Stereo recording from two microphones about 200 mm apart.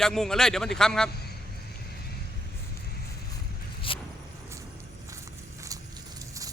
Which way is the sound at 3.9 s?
25° left (ahead or behind).